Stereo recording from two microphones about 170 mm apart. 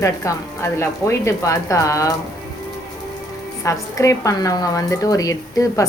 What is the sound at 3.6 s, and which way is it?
A woman's voice, 20° left (ahead or behind).